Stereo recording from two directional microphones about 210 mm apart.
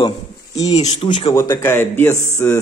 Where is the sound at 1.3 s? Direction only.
15° left (ahead or behind).